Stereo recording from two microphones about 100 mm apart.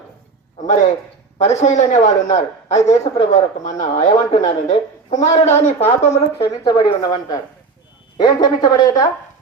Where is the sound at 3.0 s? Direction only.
90° left.